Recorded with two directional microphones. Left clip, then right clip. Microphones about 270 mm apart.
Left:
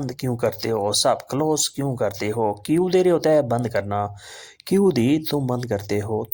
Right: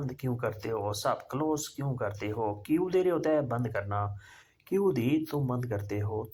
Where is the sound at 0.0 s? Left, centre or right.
Left.